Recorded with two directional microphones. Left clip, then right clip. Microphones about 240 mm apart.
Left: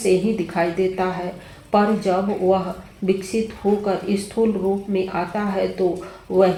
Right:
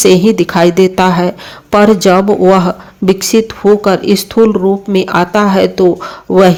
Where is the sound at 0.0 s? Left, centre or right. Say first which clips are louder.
Right 12 dB; right.